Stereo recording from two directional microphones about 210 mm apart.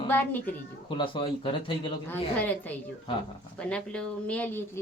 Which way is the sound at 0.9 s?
25° left (ahead or behind).